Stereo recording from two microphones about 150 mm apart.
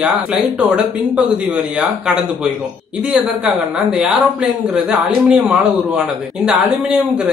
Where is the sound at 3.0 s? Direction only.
5° right (ahead or behind).